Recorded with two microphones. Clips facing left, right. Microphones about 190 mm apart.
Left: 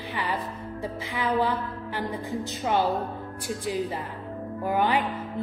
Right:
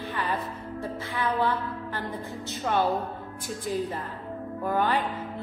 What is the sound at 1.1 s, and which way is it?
Music, 15° left (ahead or behind).